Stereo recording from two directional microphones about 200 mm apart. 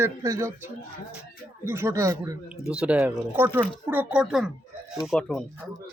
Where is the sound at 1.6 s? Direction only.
10° right (ahead or behind).